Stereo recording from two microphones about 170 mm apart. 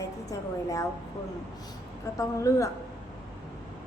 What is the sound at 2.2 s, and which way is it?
Speech, 20° left (ahead or behind).